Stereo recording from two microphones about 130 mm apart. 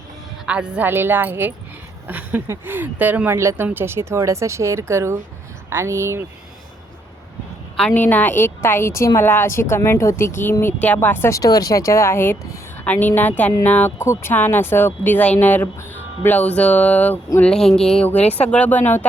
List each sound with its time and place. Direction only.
0.4 s speech: 10° right (ahead or behind)
7.8 s a woman's voice: 10° left (ahead or behind)
18.2 s speech: 50° left (ahead or behind)
18.4 s speech: 10° left (ahead or behind)